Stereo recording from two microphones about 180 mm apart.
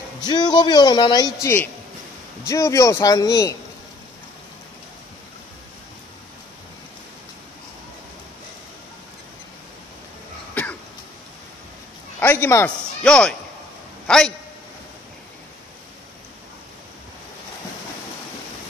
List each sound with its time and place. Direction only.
0.2 s a man's voice: 25° left (ahead or behind)
10.5 s cough: 10° left (ahead or behind)
12.2 s a man's voice: 15° left (ahead or behind)